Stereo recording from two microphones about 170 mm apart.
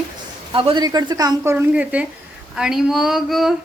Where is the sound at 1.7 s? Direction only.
5° right (ahead or behind).